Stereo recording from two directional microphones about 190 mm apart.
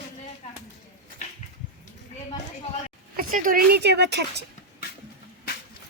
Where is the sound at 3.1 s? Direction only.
45° right (ahead or behind); by 4.4 s 65° right (ahead or behind).